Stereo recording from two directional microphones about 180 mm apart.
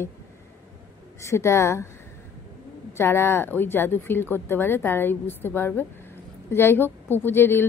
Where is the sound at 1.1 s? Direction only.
15° left (ahead or behind).